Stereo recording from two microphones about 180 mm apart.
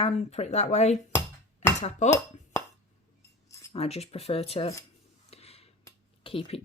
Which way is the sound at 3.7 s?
35° left (ahead or behind).